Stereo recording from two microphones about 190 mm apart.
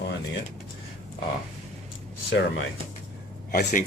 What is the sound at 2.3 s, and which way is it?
Speech, 65° left (ahead or behind).